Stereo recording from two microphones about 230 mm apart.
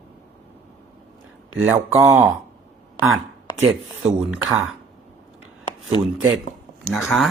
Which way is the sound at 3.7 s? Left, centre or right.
Centre.